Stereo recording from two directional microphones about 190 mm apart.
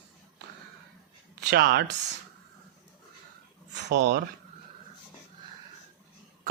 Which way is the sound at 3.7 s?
65° right (ahead or behind).